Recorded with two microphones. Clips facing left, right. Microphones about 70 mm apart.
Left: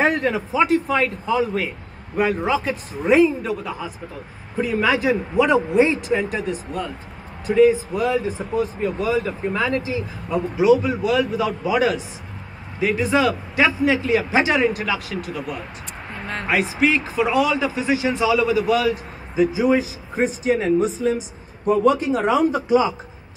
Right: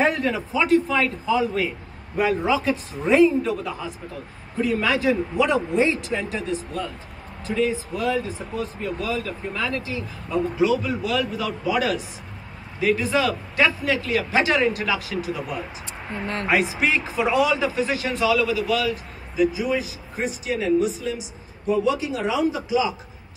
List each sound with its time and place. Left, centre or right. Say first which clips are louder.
0.0 s a man's voice: left 2 dB; centre
18.4 s a man's voice: left 4 dB; left